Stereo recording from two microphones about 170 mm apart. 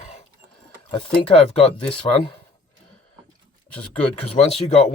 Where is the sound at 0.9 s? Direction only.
35° left (ahead or behind).